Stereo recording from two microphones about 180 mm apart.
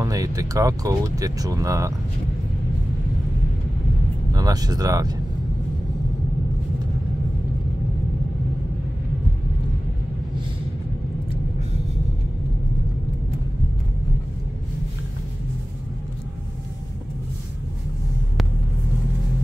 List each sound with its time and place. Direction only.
0.0 s speech: 20° right (ahead or behind)
4.3 s speech: 20° right (ahead or behind)